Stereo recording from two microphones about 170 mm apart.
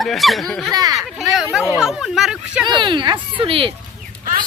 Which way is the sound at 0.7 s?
20° right (ahead or behind).